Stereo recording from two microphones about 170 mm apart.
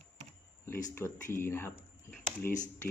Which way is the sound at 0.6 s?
15° left (ahead or behind).